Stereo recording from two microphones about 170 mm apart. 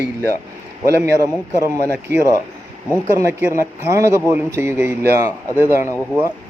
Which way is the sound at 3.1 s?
15° right (ahead or behind).